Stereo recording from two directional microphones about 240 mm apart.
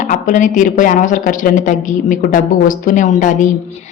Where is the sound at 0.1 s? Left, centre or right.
Left.